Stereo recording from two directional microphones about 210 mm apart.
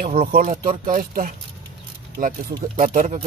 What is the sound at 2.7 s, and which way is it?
Speech, 35° right (ahead or behind).